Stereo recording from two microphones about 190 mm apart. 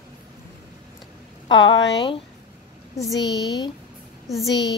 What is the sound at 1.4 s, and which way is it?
Speech, 25° left (ahead or behind).